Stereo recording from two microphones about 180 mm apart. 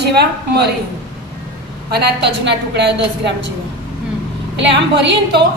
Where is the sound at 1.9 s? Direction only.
65° right (ahead or behind).